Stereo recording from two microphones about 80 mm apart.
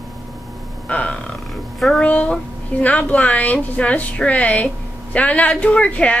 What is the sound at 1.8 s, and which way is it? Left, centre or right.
Speech, centre.